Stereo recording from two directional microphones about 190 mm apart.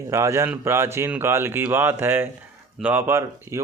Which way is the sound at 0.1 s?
15° right (ahead or behind).